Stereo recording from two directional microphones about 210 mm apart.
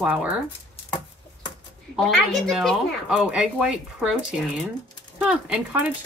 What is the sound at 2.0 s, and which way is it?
Speech, centre (ahead or behind).